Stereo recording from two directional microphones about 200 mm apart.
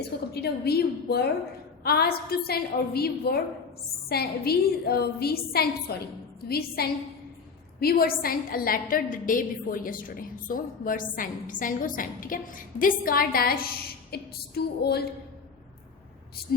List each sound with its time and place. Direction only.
0.3 s a woman's voice: 55° left (ahead or behind)